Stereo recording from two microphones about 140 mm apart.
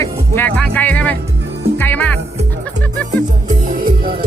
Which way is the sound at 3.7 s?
90° right.